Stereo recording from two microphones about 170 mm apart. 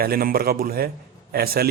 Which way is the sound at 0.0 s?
60° right (ahead or behind).